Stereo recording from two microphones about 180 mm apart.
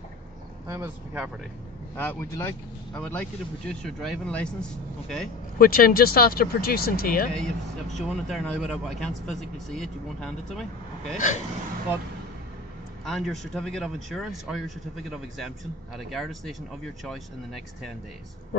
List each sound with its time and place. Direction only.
0.7 s speech: 15° right (ahead or behind)
2.0 s speech: 10° left (ahead or behind)
5.6 s speech: 55° left (ahead or behind)
7.3 s speech: centre (ahead or behind)
11.1 s speech: 40° left (ahead or behind)
13.0 s speech: centre (ahead or behind)